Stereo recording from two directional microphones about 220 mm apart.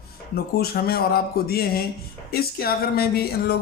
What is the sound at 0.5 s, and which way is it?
Speech, 45° left (ahead or behind).